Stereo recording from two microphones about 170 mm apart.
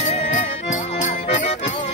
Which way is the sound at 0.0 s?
45° left (ahead or behind).